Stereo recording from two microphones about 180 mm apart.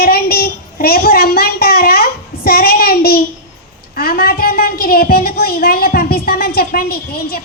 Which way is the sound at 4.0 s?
55° left (ahead or behind).